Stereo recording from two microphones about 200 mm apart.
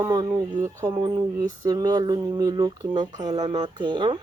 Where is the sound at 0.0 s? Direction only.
20° right (ahead or behind).